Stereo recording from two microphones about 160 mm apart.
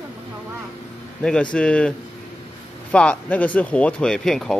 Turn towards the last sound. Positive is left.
turn(degrees=5)  # may be behind; listen again after turning